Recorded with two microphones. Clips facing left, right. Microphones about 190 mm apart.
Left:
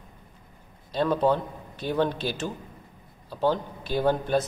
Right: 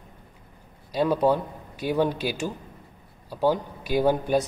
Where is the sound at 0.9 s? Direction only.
10° right (ahead or behind).